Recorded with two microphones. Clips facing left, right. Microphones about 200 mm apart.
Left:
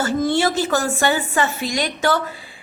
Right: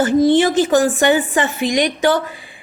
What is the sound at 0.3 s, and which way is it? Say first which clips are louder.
A woman's voice: right 6 dB; 15° right (ahead or behind).